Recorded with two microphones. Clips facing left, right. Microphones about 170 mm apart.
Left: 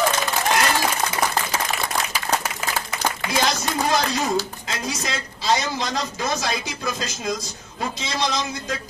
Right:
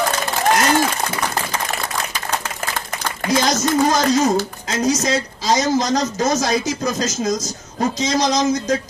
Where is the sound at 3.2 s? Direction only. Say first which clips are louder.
Right 7 dB; 45° right (ahead or behind).